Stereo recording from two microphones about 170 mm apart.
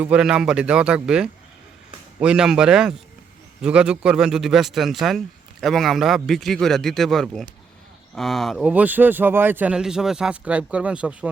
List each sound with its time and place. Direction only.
0.0 s speech: 5° right (ahead or behind)